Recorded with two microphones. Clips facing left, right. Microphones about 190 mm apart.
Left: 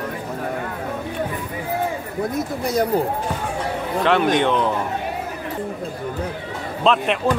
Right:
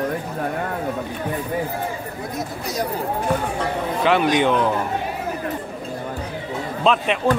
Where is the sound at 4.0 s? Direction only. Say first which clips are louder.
Even; 5° right (ahead or behind).